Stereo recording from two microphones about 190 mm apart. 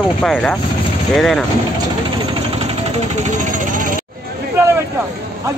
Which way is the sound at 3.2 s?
45° right (ahead or behind).